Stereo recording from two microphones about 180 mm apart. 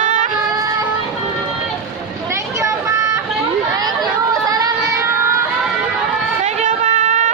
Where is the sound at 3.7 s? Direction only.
20° right (ahead or behind).